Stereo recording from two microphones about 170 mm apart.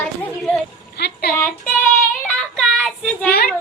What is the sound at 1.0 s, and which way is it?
Speech, 75° left (ahead or behind).